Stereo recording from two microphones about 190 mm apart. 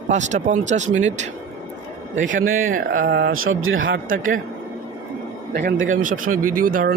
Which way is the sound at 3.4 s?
90° right.